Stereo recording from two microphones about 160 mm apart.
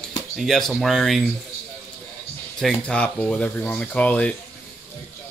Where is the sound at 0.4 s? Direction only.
Centre (ahead or behind).